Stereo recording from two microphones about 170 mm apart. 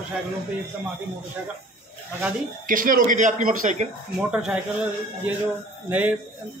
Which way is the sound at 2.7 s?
55° right (ahead or behind).